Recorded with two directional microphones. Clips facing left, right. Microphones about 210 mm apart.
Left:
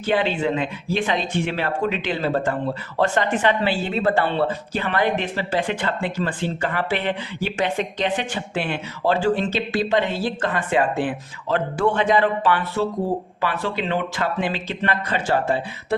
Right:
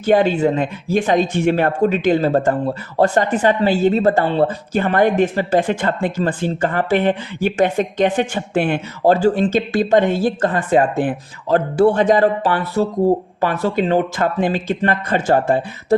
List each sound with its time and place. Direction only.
0.0 s speech: 45° right (ahead or behind)